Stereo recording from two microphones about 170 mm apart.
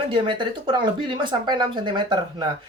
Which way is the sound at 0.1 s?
30° right (ahead or behind).